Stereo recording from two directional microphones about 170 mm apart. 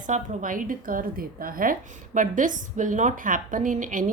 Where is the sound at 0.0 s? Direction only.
50° right (ahead or behind).